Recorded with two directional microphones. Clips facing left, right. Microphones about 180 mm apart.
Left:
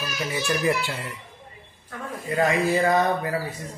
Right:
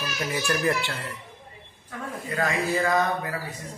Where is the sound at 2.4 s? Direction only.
30° left (ahead or behind).